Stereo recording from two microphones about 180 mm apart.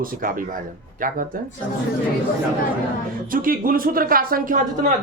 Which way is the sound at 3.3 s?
50° right (ahead or behind).